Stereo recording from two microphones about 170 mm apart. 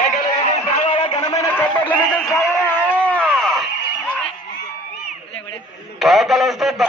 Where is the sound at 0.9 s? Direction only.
35° left (ahead or behind).